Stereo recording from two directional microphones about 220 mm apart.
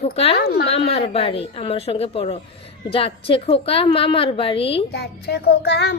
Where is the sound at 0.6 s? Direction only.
25° left (ahead or behind).